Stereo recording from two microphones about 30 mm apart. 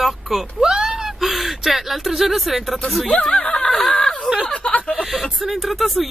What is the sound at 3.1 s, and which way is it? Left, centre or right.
Speech, left.